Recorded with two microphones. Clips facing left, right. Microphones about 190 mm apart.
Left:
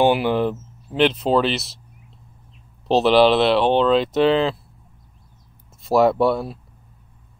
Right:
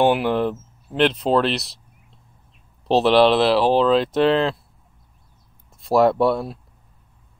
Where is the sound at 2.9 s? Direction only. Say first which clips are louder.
Even; centre (ahead or behind).